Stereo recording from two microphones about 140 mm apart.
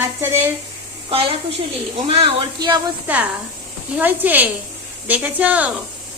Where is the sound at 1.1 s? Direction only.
40° right (ahead or behind).